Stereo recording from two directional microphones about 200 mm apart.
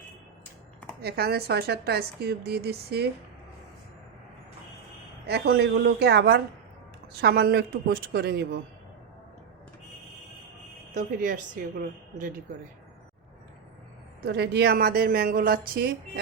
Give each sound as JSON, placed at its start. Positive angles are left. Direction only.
{"t": 1.0, "sound": "a woman's voice", "side_deg": -50}
{"t": 5.2, "sound": "a woman's voice", "side_deg": -55}
{"t": 10.9, "sound": "speech", "side_deg": -40}
{"t": 14.3, "sound": "a woman's voice", "side_deg": -55}